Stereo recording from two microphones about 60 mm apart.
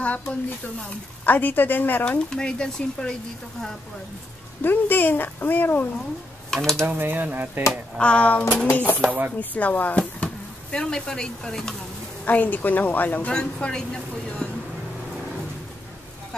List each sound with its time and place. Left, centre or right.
0.0 s a woman's voice: left
2.0 s speech: centre
4.6 s speech: left
6.5 s speech: centre
6.9 s speech: right
8.0 s a woman's voice: centre
12.3 s a woman's voice: left
13.3 s speech: centre
14.4 s vehicle: centre